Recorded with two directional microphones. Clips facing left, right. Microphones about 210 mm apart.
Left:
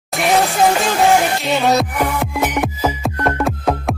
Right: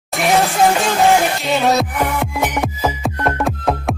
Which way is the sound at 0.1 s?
Centre (ahead or behind).